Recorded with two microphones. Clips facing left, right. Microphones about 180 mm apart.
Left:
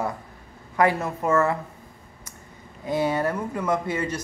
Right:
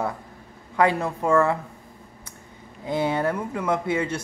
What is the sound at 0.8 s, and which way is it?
Speech, 15° right (ahead or behind).